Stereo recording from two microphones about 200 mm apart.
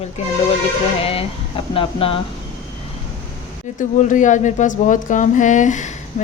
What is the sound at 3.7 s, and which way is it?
A woman's voice, 40° left (ahead or behind).